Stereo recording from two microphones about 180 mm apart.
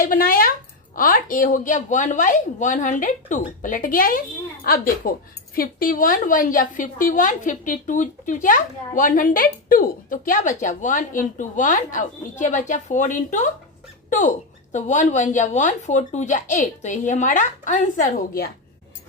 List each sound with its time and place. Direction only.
0.0 s a woman's voice: 50° left (ahead or behind)